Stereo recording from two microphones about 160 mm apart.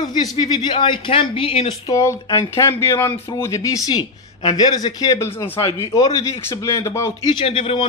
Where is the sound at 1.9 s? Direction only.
20° left (ahead or behind).